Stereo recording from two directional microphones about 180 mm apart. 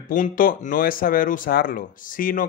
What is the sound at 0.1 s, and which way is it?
Speech, 50° left (ahead or behind).